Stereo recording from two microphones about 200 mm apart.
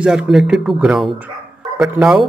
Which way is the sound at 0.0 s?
5° right (ahead or behind).